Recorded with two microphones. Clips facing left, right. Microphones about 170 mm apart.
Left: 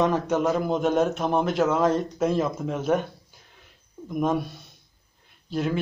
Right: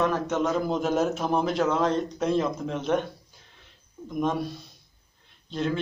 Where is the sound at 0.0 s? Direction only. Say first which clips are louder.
Left 3 dB; 15° left (ahead or behind).